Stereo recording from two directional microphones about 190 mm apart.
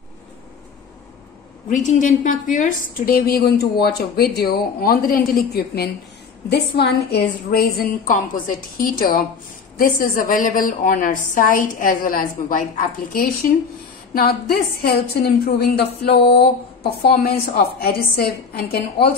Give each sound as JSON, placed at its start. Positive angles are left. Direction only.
{"t": 1.7, "sound": "a woman's voice", "side_deg": 40}